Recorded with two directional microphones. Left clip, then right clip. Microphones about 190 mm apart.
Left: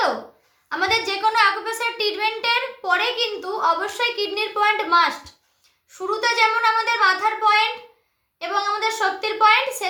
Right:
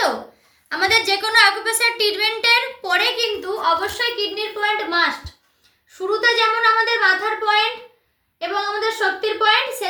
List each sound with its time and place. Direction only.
0.7 s a woman's voice: 30° left (ahead or behind); by 5.0 s 45° left (ahead or behind)
6.1 s a woman's voice: 40° left (ahead or behind)